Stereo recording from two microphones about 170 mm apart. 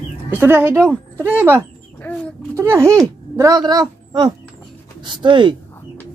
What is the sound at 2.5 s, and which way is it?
Speech, 15° right (ahead or behind).